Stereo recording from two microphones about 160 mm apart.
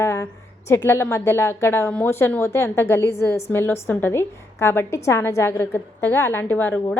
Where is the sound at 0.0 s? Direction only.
20° left (ahead or behind).